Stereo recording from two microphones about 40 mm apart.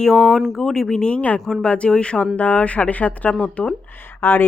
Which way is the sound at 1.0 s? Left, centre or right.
Left.